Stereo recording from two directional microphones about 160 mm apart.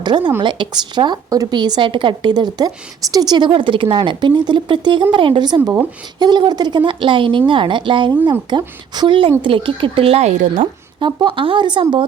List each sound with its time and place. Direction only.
0.0 s speech: 25° right (ahead or behind)
6.1 s speech: 25° right (ahead or behind); by 10.7 s 50° right (ahead or behind)
11.0 s speech: 30° right (ahead or behind)